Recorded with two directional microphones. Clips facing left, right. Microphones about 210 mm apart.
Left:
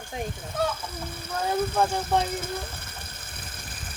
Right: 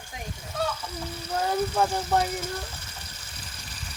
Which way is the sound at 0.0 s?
55° left (ahead or behind).